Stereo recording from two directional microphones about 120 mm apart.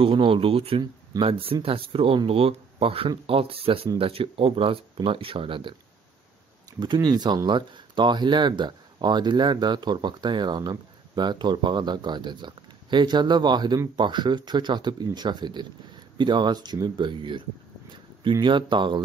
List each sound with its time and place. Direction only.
0.0 s speech: 45° right (ahead or behind)
6.8 s speech: 40° right (ahead or behind)
18.4 s speech: 40° right (ahead or behind)